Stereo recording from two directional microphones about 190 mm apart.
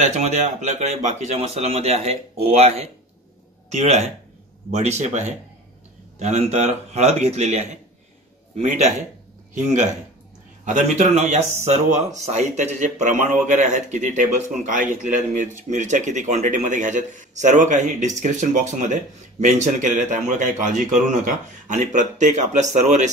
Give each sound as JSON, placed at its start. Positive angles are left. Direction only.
{"t": 0.0, "sound": "a man's voice", "side_deg": -35}
{"t": 10.6, "sound": "a man's voice", "side_deg": -40}